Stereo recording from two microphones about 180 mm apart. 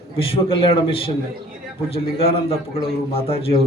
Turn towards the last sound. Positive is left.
turn(degrees=35)  # may be behind; listen again after turning